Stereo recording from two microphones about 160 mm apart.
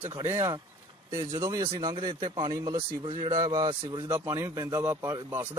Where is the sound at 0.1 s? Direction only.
20° right (ahead or behind).